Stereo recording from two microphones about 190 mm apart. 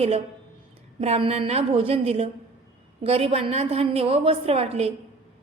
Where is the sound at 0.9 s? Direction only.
35° right (ahead or behind).